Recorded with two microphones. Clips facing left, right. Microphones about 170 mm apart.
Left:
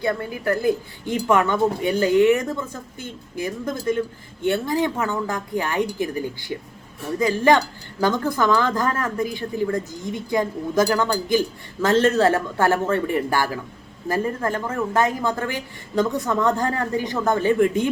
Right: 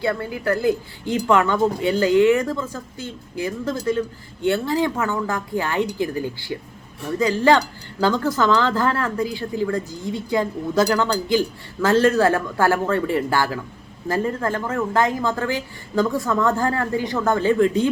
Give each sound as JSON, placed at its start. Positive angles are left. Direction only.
{"t": 0.0, "sound": "a woman's voice", "side_deg": 20}
{"t": 7.5, "sound": "a woman's voice", "side_deg": 20}